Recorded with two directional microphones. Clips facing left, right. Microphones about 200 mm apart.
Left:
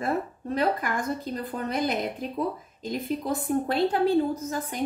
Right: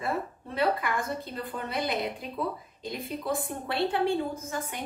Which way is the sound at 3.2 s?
40° left (ahead or behind).